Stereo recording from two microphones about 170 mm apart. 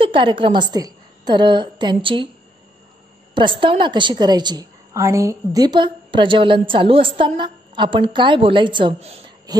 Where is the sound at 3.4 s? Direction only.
30° right (ahead or behind).